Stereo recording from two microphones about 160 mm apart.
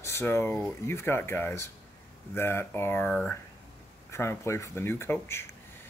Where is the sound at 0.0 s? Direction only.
15° left (ahead or behind).